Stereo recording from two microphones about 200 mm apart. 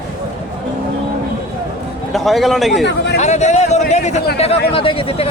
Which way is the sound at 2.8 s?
60° left (ahead or behind).